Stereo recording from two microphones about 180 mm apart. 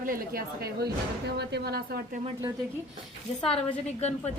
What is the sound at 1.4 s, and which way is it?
Speech, 70° right (ahead or behind).